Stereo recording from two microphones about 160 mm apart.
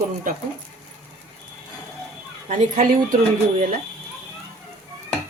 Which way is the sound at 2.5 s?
55° right (ahead or behind).